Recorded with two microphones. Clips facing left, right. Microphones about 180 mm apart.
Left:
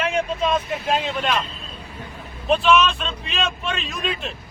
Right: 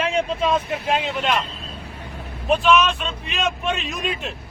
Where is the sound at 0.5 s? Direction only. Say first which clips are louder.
Right 1 dB; 10° right (ahead or behind).